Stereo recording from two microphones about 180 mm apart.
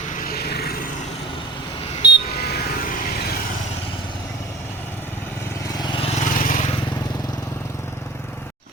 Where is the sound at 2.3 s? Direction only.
60° left (ahead or behind).